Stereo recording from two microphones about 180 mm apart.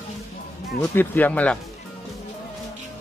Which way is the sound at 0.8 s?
10° left (ahead or behind).